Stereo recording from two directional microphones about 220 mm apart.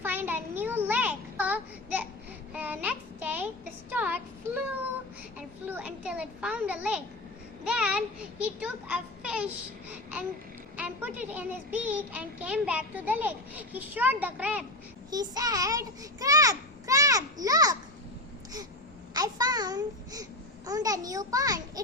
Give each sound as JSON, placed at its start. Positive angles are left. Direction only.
{"t": 0.0, "sound": "a sound", "side_deg": -10}
{"t": 2.5, "sound": "child singing", "side_deg": -5}
{"t": 5.6, "sound": "children playing", "side_deg": -10}
{"t": 7.6, "sound": "a sound", "side_deg": -5}
{"t": 10.8, "sound": "a child's voice", "side_deg": -5}
{"t": 15.1, "sound": "a child's voice", "side_deg": -15}
{"t": 19.1, "sound": "a child's voice", "side_deg": -20}